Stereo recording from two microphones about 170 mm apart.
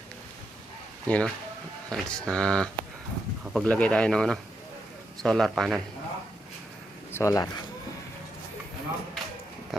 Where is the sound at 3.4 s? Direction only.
Centre (ahead or behind).